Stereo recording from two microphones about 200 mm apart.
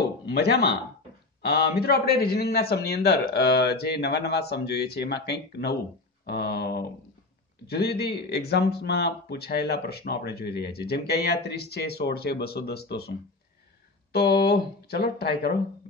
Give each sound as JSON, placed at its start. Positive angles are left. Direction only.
{"t": 0.3, "sound": "a man's voice", "side_deg": 55}
{"t": 14.1, "sound": "a man's voice", "side_deg": 50}